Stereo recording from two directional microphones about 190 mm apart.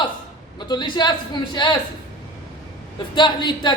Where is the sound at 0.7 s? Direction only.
25° left (ahead or behind).